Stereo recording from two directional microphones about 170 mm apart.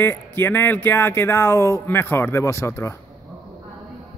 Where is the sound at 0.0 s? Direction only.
15° left (ahead or behind).